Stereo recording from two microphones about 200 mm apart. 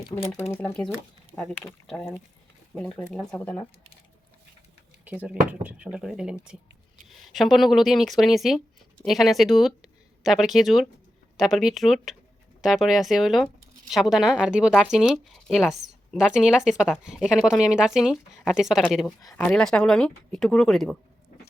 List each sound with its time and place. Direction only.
0.2 s speech: 30° left (ahead or behind)
0.5 s speech: 5° left (ahead or behind)
5.0 s speech: 5° right (ahead or behind)